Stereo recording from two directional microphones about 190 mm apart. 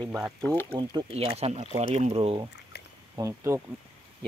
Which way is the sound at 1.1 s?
30° right (ahead or behind).